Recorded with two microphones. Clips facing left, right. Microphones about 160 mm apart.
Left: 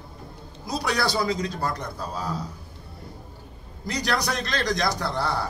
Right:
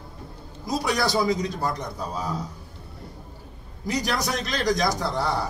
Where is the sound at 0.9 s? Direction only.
15° right (ahead or behind).